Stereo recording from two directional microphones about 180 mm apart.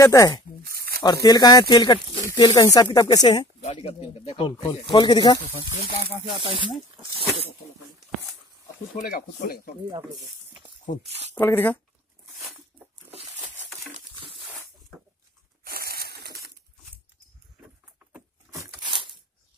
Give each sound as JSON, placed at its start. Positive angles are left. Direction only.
{"t": 0.0, "sound": "speech", "side_deg": 15}
{"t": 0.7, "sound": "tearing", "side_deg": -55}
{"t": 1.0, "sound": "speech", "side_deg": 20}
{"t": 3.6, "sound": "speech", "side_deg": 35}
{"t": 6.5, "sound": "speech", "side_deg": -30}
{"t": 8.9, "sound": "speech", "side_deg": 50}
{"t": 9.8, "sound": "speech", "side_deg": -25}
{"t": 11.3, "sound": "speech", "side_deg": 10}
{"t": 13.9, "sound": "a sound", "side_deg": -30}
{"t": 15.6, "sound": "a sound", "side_deg": -55}
{"t": 18.5, "sound": "a sound", "side_deg": -20}